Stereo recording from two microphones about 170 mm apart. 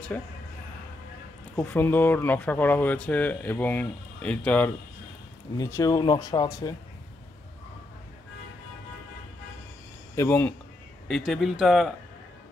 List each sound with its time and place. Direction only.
1.6 s speech: 10° left (ahead or behind)
5.6 s speech: 20° left (ahead or behind)
10.1 s speech: 15° left (ahead or behind)
11.1 s speech: centre (ahead or behind)